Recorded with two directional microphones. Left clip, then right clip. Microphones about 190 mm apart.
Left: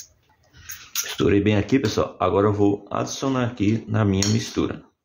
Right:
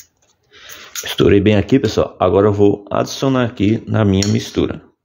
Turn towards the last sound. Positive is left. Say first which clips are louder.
# right 6 dB
turn(degrees=-35)  # may be behind; listen again after turning